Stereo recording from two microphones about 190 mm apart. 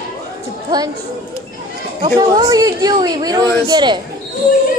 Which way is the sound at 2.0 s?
20° right (ahead or behind).